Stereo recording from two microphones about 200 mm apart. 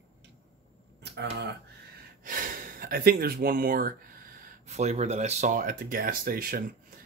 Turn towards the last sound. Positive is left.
turn(degrees=-45)  # may be behind; listen again after turning